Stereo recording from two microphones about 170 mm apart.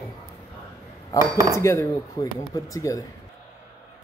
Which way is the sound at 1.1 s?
20° left (ahead or behind).